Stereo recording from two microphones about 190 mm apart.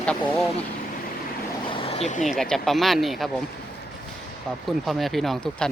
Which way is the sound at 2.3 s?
Centre (ahead or behind).